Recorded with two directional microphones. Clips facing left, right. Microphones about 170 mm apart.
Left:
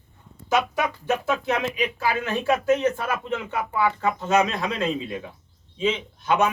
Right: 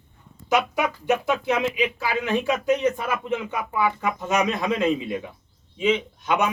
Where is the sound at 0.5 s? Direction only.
15° right (ahead or behind).